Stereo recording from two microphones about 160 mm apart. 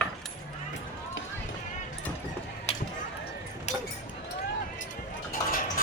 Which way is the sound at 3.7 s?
45° left (ahead or behind).